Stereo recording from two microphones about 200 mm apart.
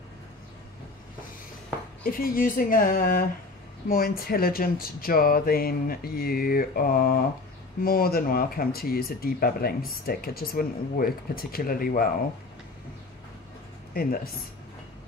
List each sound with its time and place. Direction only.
2.0 s speech: 45° left (ahead or behind)
13.9 s speech: 50° left (ahead or behind)